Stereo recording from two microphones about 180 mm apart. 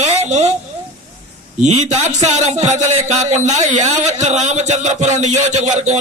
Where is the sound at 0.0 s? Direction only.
40° right (ahead or behind).